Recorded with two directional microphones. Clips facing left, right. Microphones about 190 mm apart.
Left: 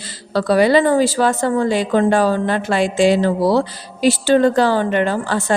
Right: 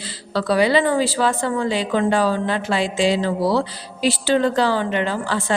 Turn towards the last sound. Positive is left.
turn(degrees=45)  # may be behind; listen again after turning